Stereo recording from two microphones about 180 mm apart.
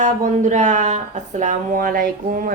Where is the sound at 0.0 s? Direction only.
40° right (ahead or behind).